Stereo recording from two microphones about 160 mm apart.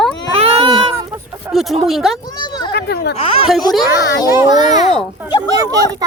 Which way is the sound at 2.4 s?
30° left (ahead or behind).